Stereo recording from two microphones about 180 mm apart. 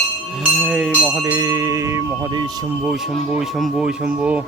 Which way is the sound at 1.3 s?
20° right (ahead or behind).